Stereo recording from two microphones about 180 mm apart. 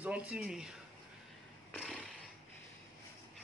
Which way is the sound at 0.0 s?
5° right (ahead or behind).